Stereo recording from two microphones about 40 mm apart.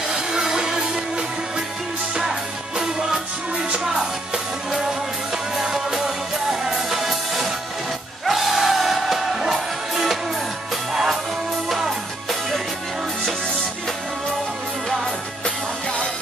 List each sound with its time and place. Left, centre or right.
0.3 s music: centre
2.8 s music: centre
5.6 s music: centre
11.7 s music: centre